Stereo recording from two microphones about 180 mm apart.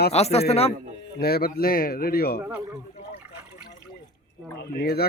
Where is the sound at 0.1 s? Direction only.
35° left (ahead or behind).